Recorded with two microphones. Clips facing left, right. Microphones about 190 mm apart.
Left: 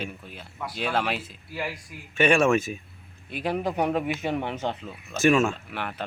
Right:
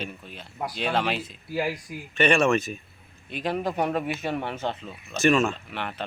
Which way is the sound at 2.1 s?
10° left (ahead or behind).